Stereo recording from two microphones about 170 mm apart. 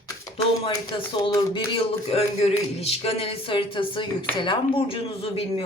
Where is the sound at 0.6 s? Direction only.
25° left (ahead or behind).